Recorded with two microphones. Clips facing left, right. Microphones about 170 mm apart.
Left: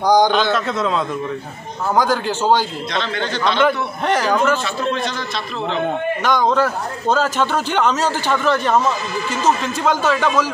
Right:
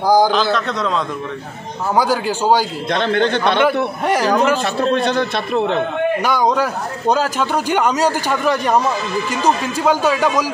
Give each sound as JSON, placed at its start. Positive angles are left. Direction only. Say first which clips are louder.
{"t": 0.0, "sound": "a man's voice", "louder": "right 1 dB", "side_deg": -5}
{"t": 2.0, "sound": "speech", "louder": "right 1 dB", "side_deg": -10}
{"t": 2.9, "sound": "a man's voice", "louder": "right 11 dB", "side_deg": -55}
{"t": 4.0, "sound": "speech", "louder": "right 1 dB", "side_deg": -10}
{"t": 4.9, "sound": "a man's voice", "louder": "right 7 dB", "side_deg": -60}
{"t": 6.2, "sound": "speech", "louder": "left 4 dB", "side_deg": -10}